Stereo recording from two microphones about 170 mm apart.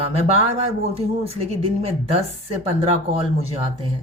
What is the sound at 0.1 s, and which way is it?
Speech, 35° right (ahead or behind).